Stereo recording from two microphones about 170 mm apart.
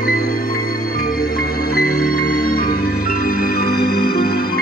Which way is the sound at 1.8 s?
60° left (ahead or behind).